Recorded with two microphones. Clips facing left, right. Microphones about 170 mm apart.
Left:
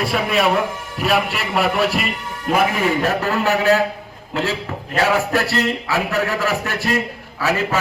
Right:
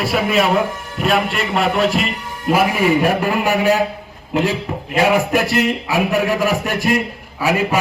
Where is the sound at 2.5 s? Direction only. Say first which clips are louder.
Right 3 dB; 10° right (ahead or behind).